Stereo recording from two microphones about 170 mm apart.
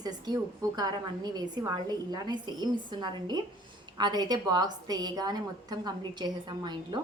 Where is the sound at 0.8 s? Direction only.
25° right (ahead or behind).